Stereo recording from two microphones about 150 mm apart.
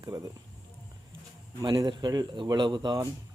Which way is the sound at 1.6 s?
30° right (ahead or behind).